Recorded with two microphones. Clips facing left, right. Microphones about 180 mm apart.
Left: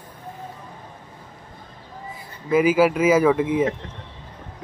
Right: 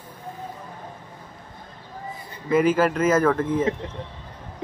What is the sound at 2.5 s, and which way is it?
Speech, 5° left (ahead or behind).